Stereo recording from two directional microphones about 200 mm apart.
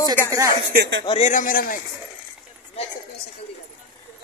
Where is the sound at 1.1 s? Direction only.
35° left (ahead or behind).